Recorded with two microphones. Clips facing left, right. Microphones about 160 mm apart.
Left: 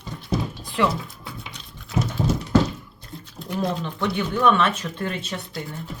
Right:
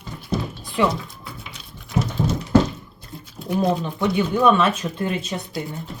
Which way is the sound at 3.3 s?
10° right (ahead or behind).